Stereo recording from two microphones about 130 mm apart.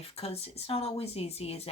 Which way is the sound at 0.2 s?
50° left (ahead or behind).